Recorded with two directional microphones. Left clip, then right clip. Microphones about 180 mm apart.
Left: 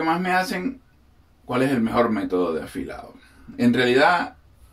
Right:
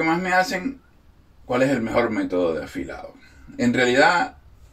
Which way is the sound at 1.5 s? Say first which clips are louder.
Right 2 dB; 55° left (ahead or behind).